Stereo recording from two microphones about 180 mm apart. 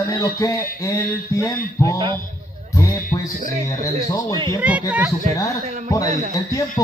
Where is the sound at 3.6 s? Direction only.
20° left (ahead or behind).